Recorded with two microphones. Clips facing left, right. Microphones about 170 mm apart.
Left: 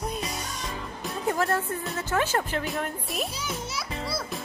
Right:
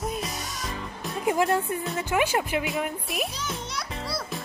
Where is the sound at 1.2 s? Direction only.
15° right (ahead or behind); by 4.4 s centre (ahead or behind).